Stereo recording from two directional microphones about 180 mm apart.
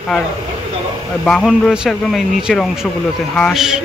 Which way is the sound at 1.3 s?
Centre (ahead or behind).